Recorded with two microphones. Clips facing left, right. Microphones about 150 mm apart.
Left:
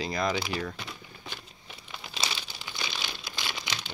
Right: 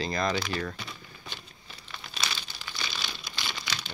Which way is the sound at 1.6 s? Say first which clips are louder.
Left 1 dB; 15° left (ahead or behind).